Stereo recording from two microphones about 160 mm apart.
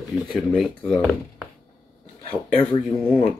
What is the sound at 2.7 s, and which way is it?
Speech, 35° left (ahead or behind).